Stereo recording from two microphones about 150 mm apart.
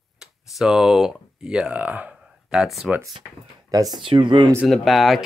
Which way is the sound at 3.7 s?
25° right (ahead or behind).